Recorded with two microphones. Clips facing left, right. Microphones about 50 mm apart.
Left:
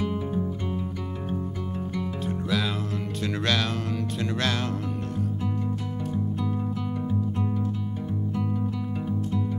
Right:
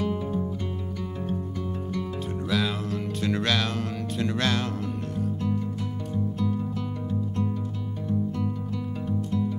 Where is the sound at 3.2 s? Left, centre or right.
Centre.